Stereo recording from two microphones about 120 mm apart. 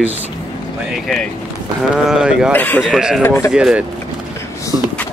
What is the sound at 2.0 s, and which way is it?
Speech, 5° right (ahead or behind).